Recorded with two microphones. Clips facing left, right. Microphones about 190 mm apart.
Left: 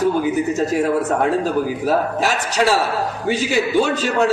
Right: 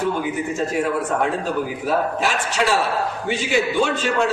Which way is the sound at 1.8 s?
40° left (ahead or behind).